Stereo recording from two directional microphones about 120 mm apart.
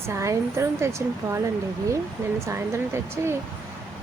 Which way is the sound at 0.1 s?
25° right (ahead or behind).